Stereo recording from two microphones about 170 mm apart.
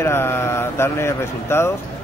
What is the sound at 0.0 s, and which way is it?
A man's voice, 15° left (ahead or behind).